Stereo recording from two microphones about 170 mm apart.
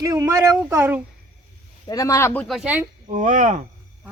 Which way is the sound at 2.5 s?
5° right (ahead or behind).